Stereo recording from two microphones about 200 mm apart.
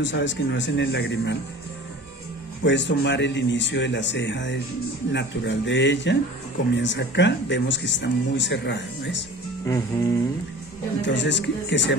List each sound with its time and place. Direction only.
0.0 s speech: 65° left (ahead or behind)
2.6 s speech: 65° left (ahead or behind)
9.7 s music: 20° left (ahead or behind)
11.0 s speech: 65° left (ahead or behind)